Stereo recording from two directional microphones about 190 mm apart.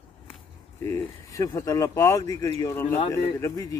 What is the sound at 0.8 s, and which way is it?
Moo, 20° left (ahead or behind).